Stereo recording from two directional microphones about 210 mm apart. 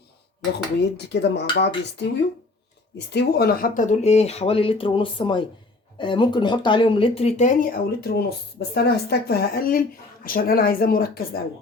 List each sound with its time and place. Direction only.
0.8 s speech: 55° left (ahead or behind)
3.1 s speech: 50° left (ahead or behind)